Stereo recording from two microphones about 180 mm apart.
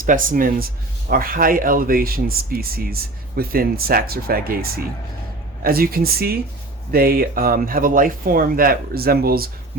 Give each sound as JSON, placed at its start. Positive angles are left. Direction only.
{"t": 0.0, "sound": "speech", "side_deg": -50}